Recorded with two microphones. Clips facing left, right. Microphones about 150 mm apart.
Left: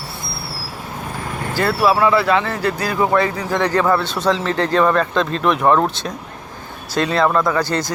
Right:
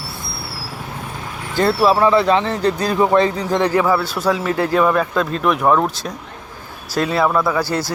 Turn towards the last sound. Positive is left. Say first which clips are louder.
# even
turn(degrees=-5)  # may be behind; listen again after turning